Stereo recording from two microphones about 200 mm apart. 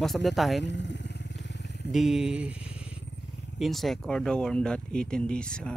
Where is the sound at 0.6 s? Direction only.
60° left (ahead or behind).